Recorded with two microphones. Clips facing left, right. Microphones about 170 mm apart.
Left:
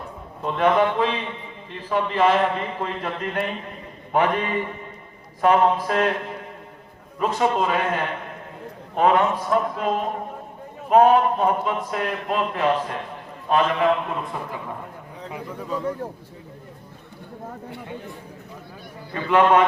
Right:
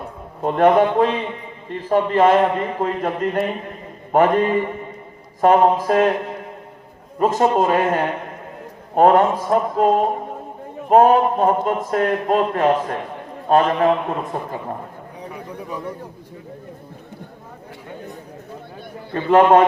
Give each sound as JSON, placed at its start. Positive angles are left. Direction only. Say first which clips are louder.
{"t": 0.4, "sound": "a man's voice", "louder": "right 5 dB", "side_deg": -50}
{"t": 7.2, "sound": "a man's voice", "louder": "right 5 dB", "side_deg": -45}
{"t": 19.1, "sound": "a man's voice", "louder": "right 5 dB", "side_deg": -40}